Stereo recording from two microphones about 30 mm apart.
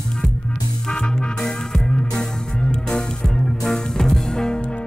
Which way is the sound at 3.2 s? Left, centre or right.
Centre.